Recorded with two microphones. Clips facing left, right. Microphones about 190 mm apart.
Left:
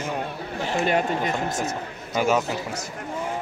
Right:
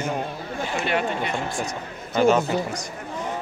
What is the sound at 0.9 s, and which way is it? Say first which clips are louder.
Speech: left 1 dB; 40° left (ahead or behind).